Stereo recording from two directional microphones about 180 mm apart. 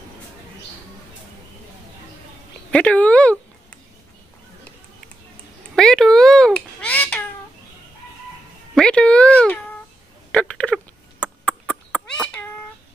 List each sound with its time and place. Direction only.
2.7 s speech: 5° left (ahead or behind)
5.8 s babbling: 5° left (ahead or behind)
8.7 s a sound: 5° left (ahead or behind)